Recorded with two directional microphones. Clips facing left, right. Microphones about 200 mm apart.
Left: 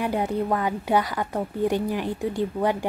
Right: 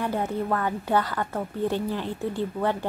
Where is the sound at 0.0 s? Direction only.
15° left (ahead or behind).